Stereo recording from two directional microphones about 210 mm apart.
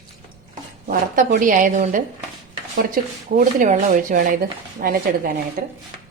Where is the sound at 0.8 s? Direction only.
40° right (ahead or behind).